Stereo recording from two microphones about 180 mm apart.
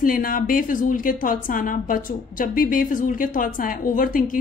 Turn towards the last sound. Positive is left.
turn(degrees=50)  # may be behind; listen again after turning